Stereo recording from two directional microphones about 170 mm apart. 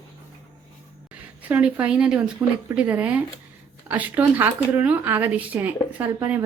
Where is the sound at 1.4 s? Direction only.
10° right (ahead or behind).